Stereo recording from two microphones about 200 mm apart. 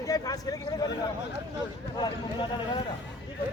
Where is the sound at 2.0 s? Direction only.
25° left (ahead or behind).